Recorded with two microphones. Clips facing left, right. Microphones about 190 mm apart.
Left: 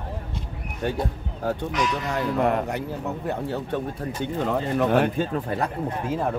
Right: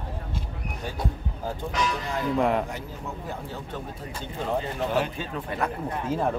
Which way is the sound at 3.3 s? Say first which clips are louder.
Left 8 dB; 65° left (ahead or behind).